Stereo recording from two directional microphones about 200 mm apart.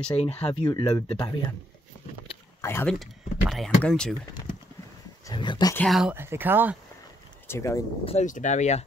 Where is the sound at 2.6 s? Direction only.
10° left (ahead or behind).